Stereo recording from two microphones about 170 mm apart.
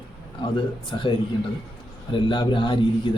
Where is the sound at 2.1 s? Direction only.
30° left (ahead or behind).